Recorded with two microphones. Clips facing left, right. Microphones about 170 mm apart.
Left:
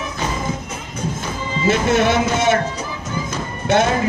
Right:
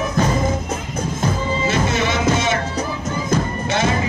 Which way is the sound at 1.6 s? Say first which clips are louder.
Left 6 dB; 55° left (ahead or behind).